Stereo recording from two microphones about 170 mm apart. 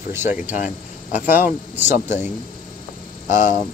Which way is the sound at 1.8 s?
15° right (ahead or behind).